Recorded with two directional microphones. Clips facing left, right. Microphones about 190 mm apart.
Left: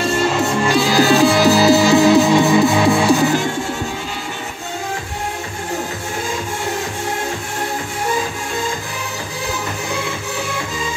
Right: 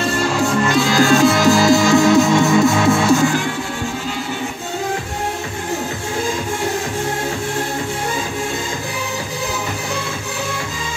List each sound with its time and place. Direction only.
0.4 s music: 5° left (ahead or behind)
0.8 s music: 15° left (ahead or behind)